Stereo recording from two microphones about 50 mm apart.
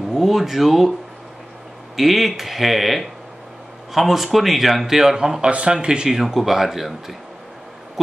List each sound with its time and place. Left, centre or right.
0.1 s speech: centre
2.0 s speech: centre
6.0 s speech: centre